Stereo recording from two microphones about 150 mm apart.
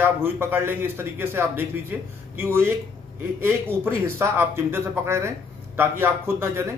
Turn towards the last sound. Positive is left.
turn(degrees=-15)  # may be behind; listen again after turning